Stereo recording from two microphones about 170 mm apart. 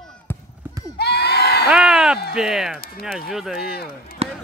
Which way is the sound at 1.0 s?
70° left (ahead or behind).